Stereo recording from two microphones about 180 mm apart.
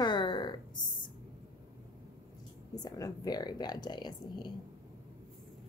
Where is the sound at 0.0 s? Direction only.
25° left (ahead or behind).